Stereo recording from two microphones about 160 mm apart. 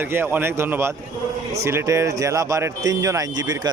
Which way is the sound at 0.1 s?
15° right (ahead or behind).